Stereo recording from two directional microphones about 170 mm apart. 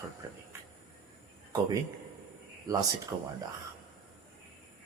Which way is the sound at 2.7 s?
20° right (ahead or behind).